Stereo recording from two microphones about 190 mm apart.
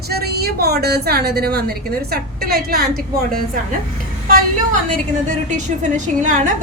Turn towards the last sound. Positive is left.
turn(degrees=-40)  # may be behind; listen again after turning